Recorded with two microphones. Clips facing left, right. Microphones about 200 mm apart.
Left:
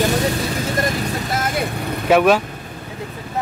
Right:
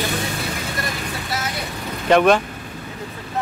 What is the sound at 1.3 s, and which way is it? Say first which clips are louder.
Vehicle: left 5 dB; 50° left (ahead or behind).